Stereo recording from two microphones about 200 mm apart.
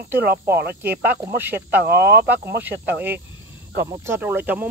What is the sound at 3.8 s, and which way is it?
Speech, 10° right (ahead or behind).